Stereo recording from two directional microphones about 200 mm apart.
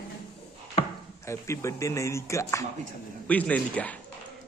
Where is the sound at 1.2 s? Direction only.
15° left (ahead or behind).